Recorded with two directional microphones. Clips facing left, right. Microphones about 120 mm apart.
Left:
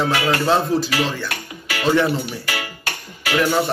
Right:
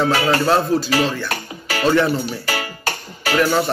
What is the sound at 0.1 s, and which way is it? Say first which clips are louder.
Music: right 2 dB; 30° right (ahead or behind).